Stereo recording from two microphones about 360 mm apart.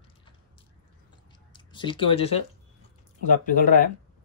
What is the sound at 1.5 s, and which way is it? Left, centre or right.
Speech, centre.